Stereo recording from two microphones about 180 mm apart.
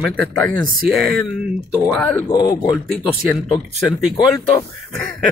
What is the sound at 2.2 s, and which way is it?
Speech, 25° left (ahead or behind).